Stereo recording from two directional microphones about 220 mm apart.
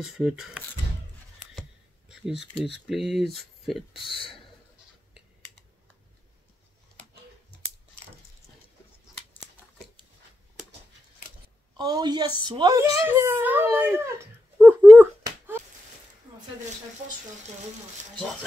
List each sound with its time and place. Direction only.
0.0 s speech: centre (ahead or behind)
1.5 s a sound: centre (ahead or behind)
2.6 s speech: centre (ahead or behind)
3.9 s speech: 25° left (ahead or behind)
11.7 s a child's voice: 20° right (ahead or behind)